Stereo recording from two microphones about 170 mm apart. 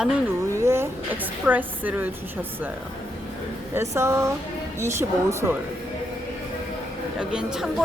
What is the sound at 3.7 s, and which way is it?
A woman's voice, 15° right (ahead or behind).